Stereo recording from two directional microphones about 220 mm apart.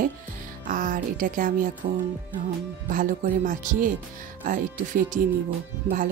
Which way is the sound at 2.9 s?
40° right (ahead or behind).